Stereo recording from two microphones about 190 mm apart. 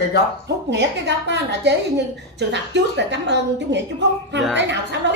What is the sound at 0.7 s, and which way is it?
A woman's voice, 65° right (ahead or behind).